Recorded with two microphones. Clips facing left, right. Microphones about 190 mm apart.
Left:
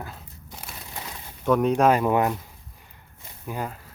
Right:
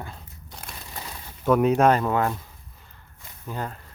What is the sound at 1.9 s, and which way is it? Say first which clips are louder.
Speech: left 1 dB; 15° left (ahead or behind).